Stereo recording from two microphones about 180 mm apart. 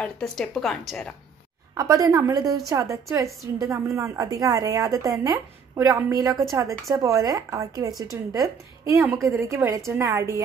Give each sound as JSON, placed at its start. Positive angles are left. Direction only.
{"t": 0.0, "sound": "speech", "side_deg": 0}
{"t": 1.8, "sound": "a woman's voice", "side_deg": -20}